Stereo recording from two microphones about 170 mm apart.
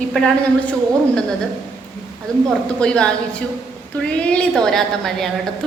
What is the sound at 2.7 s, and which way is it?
A woman's voice, 5° left (ahead or behind).